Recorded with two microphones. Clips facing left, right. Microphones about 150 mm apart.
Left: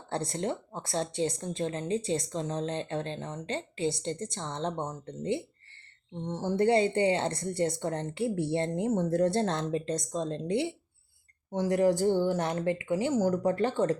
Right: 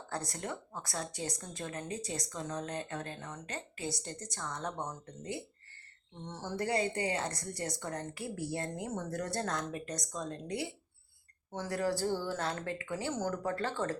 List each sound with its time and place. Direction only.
0.1 s a woman's voice: 25° left (ahead or behind)